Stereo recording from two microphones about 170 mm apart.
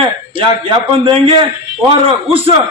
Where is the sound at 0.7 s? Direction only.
30° right (ahead or behind).